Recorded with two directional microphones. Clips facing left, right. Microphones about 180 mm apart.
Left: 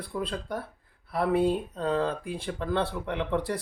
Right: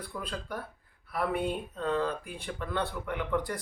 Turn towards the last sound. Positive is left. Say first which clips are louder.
# left 3 dB
turn(degrees=30)  # may be behind; listen again after turning